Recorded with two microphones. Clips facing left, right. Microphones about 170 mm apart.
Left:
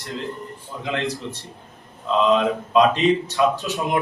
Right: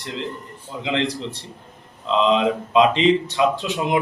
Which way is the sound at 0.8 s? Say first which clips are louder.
Right 2 dB; 15° right (ahead or behind).